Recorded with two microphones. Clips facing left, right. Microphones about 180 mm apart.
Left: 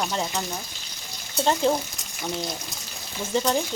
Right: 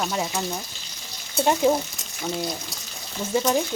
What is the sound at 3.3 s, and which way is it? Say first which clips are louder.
Speech: right 2 dB; 5° right (ahead or behind).